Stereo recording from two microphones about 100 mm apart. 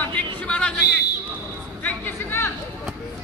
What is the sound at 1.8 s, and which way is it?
Chatter, 20° left (ahead or behind).